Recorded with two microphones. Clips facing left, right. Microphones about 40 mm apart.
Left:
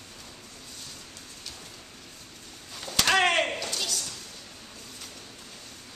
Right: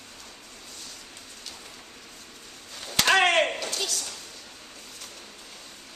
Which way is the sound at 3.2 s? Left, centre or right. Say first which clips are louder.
Right 2 dB; centre.